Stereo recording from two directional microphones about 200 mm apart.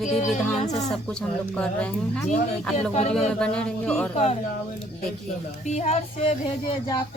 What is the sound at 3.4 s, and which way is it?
Speech, 5° left (ahead or behind).